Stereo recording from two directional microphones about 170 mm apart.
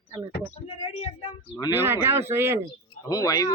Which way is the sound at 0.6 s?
40° left (ahead or behind).